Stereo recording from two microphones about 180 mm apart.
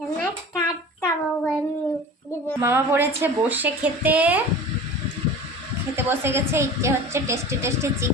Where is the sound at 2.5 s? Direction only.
15° right (ahead or behind).